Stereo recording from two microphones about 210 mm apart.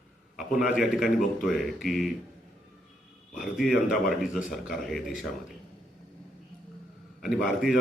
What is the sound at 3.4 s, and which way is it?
A man's voice, centre (ahead or behind).